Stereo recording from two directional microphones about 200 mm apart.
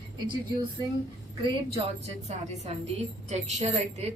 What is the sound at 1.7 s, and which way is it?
A woman's voice, 35° right (ahead or behind).